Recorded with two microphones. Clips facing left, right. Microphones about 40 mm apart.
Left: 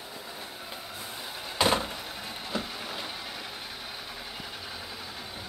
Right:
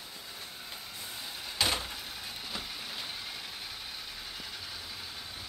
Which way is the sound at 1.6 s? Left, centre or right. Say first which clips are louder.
Left 6 dB; left.